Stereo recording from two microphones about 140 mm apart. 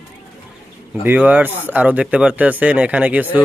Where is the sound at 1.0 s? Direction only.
10° right (ahead or behind).